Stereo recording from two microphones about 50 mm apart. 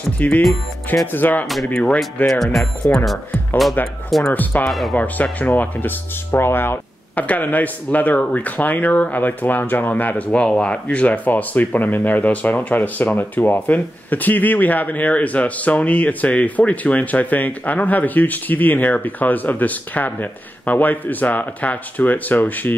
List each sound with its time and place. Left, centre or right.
0.2 s speech: left
2.3 s speech: centre
4.3 s speech: left
4.6 s speech: centre
4.9 s speech: left
6.4 s speech: left
7.2 s speech: left